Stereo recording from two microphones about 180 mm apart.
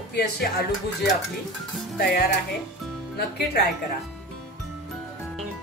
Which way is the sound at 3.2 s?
65° left (ahead or behind).